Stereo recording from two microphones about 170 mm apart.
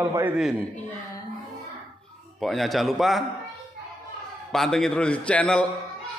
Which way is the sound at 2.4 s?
Centre (ahead or behind).